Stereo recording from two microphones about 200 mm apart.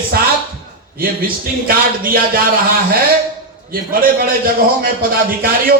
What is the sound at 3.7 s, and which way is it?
A man's voice, 45° right (ahead or behind).